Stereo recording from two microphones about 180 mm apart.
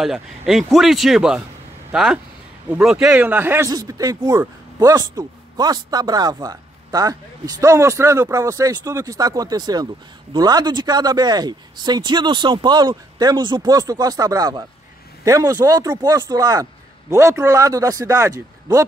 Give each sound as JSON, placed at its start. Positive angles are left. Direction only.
{"t": 0.0, "sound": "speech", "side_deg": 0}